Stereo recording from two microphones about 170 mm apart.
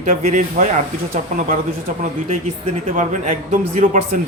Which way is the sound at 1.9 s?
50° right (ahead or behind).